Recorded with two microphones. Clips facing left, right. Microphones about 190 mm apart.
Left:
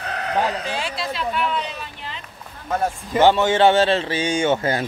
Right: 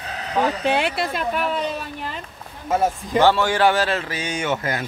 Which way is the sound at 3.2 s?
20° left (ahead or behind).